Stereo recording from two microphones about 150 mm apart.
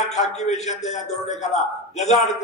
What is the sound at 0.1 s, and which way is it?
A man's voice, 50° left (ahead or behind).